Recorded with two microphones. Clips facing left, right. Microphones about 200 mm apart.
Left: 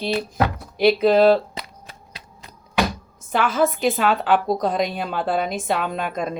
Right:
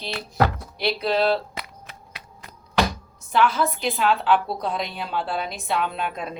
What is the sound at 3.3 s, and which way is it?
A woman's voice, 50° left (ahead or behind).